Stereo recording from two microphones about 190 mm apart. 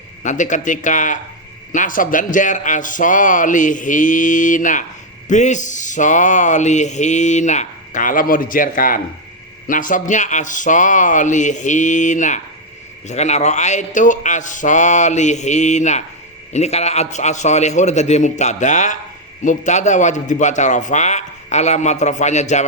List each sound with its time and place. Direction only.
0.2 s a man's voice: 40° left (ahead or behind)